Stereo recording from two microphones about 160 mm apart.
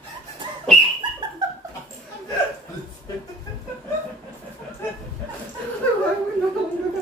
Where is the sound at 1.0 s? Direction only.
30° right (ahead or behind).